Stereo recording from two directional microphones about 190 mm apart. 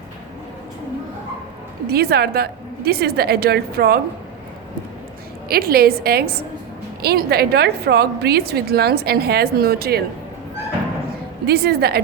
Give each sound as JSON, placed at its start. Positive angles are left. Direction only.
{"t": 1.9, "sound": "a woman's voice", "side_deg": -55}
{"t": 5.5, "sound": "a woman's voice", "side_deg": -50}
{"t": 11.4, "sound": "a woman's voice", "side_deg": -55}